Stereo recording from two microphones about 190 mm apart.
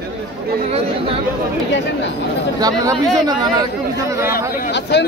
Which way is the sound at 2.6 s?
20° right (ahead or behind).